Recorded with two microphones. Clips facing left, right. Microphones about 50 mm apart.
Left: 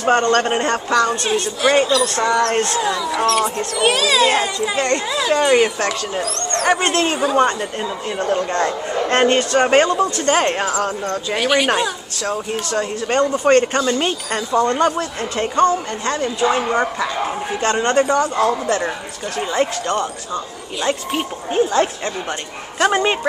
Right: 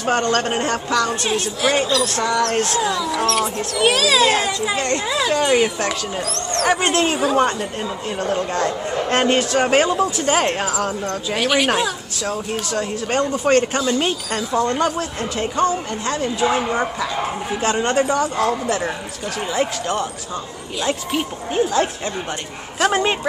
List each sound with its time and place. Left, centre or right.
0.0 s a woman's voice: centre
17.7 s a woman's voice: centre
19.5 s a woman's voice: centre
20.8 s a woman's voice: centre